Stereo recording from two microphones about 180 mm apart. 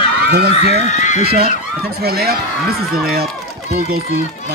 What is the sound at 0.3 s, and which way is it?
Speech, 65° right (ahead or behind).